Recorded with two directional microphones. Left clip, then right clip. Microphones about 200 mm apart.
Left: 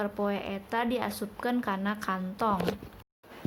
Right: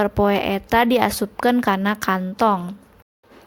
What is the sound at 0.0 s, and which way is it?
A woman's voice, 45° right (ahead or behind).